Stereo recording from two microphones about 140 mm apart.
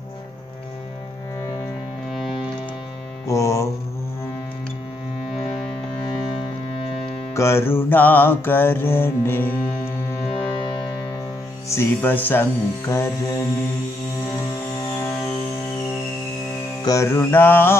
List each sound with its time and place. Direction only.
2.1 s music: centre (ahead or behind)
3.3 s music: 20° left (ahead or behind)
7.3 s music: 20° left (ahead or behind)
11.7 s music: 15° left (ahead or behind)
16.8 s music: 20° left (ahead or behind)